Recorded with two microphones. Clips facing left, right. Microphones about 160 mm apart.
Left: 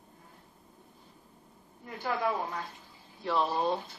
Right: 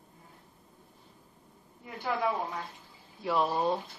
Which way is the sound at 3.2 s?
5° right (ahead or behind).